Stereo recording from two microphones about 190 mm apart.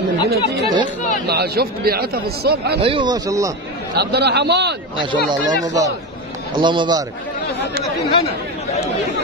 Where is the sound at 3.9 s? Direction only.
60° right (ahead or behind).